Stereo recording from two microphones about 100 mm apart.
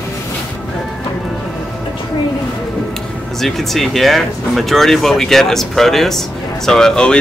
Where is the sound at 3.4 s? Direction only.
Centre (ahead or behind).